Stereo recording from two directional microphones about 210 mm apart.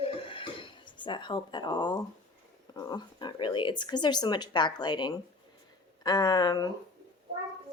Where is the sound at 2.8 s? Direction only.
20° left (ahead or behind).